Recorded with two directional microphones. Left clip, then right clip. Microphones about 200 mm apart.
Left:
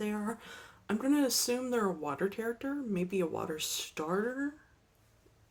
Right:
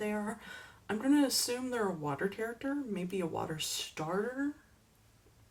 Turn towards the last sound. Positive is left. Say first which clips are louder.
# left 2 dB
turn(degrees=50)  # may be behind; listen again after turning